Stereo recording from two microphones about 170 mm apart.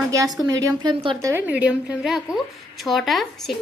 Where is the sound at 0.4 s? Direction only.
20° right (ahead or behind).